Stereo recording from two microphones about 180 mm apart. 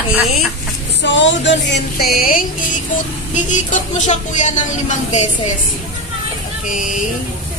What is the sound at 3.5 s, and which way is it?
Music, 45° left (ahead or behind).